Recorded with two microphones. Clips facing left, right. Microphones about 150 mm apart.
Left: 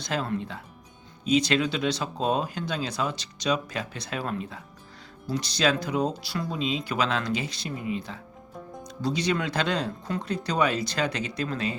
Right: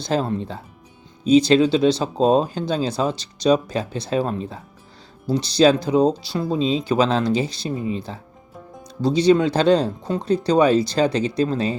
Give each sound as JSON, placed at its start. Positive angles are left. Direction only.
{"t": 0.0, "sound": "speech", "side_deg": -30}